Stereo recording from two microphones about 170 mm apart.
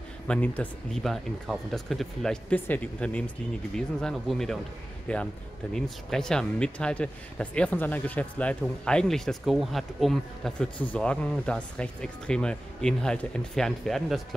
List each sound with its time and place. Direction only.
0.3 s speech: 10° left (ahead or behind)